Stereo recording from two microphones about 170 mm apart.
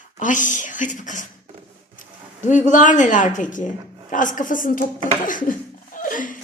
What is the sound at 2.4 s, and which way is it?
Speech, 45° left (ahead or behind).